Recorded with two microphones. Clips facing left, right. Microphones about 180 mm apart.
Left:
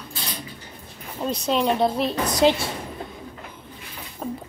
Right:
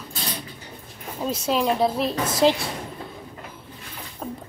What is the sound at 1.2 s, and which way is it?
Speech, 5° right (ahead or behind).